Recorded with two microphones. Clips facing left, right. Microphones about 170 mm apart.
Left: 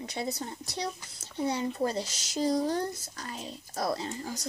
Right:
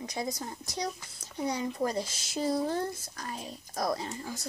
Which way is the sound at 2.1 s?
40° left (ahead or behind).